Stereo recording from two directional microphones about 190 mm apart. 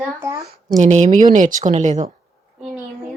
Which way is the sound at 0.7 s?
40° right (ahead or behind).